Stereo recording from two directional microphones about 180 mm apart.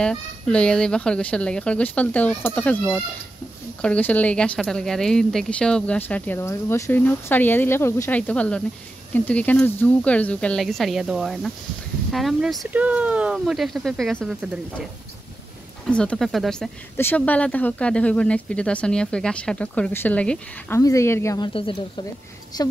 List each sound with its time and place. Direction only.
0.0 s speech: 5° left (ahead or behind)
15.9 s speech: 5° left (ahead or behind)
21.5 s speech: 30° left (ahead or behind)